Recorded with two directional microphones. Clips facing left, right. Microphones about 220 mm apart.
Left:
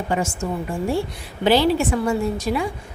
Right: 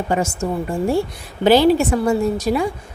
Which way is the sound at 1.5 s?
40° right (ahead or behind).